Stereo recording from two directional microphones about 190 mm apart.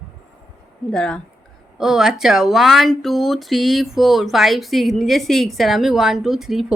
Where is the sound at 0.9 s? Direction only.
5° left (ahead or behind).